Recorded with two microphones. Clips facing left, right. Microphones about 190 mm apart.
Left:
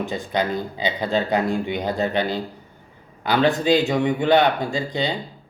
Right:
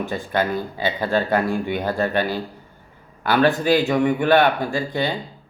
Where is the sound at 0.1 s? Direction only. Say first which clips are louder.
Right 1 dB; 20° left (ahead or behind).